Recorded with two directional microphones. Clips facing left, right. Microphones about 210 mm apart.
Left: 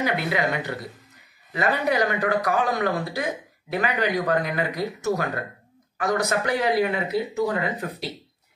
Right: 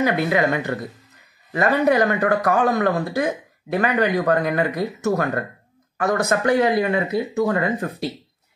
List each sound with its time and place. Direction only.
0.0 s speech: 50° right (ahead or behind)